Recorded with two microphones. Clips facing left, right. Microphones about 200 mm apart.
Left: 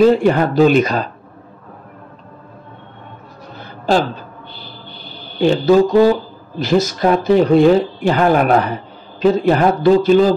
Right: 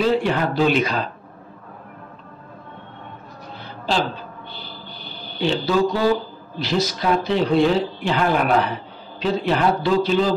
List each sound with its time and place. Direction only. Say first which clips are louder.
0.0 s speech: left 8 dB; 45° left (ahead or behind)
3.5 s a sound: left 7 dB; 45° left (ahead or behind)
5.4 s speech: left 8 dB; 50° left (ahead or behind)